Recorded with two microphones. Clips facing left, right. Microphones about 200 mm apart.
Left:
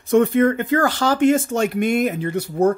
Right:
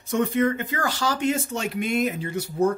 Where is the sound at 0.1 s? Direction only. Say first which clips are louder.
Left 7 dB; 55° left (ahead or behind).